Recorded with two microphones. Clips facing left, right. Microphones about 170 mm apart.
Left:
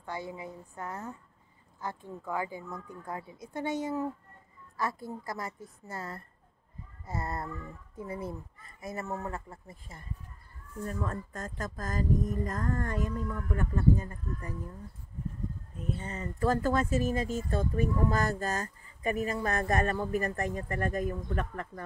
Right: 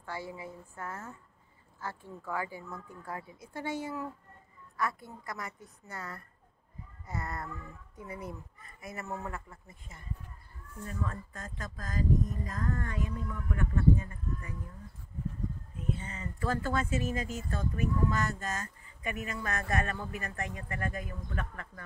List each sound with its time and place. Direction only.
0.0 s speech: 20° left (ahead or behind)
10.9 s speech: 45° left (ahead or behind)
16.0 s speech: 40° left (ahead or behind)